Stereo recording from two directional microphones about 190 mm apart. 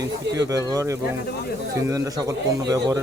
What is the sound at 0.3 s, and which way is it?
A man's voice, 20° right (ahead or behind).